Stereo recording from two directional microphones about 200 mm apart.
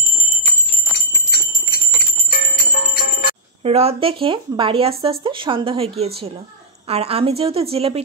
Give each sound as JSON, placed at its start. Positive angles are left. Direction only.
{"t": 2.4, "sound": "music", "side_deg": 35}
{"t": 3.6, "sound": "speech", "side_deg": -30}